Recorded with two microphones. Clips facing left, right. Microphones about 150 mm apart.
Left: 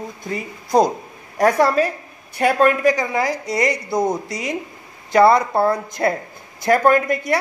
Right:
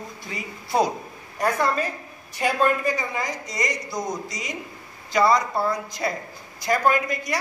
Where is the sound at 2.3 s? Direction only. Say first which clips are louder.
Left 6 dB; 65° left (ahead or behind).